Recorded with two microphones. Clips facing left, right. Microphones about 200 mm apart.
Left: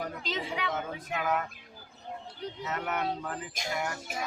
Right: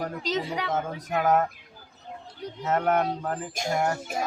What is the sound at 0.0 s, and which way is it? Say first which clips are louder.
Speech: right 6 dB; 40° right (ahead or behind).